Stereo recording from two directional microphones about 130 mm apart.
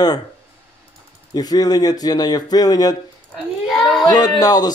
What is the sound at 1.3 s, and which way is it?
Speech, 30° left (ahead or behind).